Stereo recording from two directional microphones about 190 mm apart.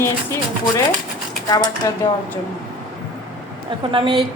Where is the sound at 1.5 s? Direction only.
20° left (ahead or behind).